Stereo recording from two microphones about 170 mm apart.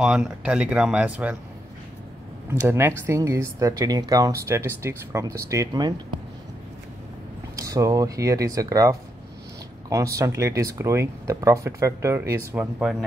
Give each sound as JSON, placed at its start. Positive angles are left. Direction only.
{"t": 0.0, "sound": "speech", "side_deg": -5}
{"t": 3.1, "sound": "speech", "side_deg": -15}
{"t": 7.5, "sound": "speech", "side_deg": -20}